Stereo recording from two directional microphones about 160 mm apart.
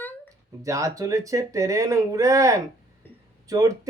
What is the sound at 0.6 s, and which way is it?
Speech, 20° right (ahead or behind).